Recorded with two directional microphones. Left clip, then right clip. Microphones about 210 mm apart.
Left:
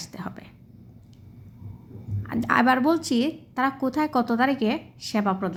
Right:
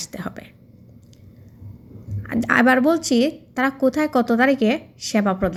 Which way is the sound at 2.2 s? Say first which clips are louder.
Right 4 dB; 10° right (ahead or behind).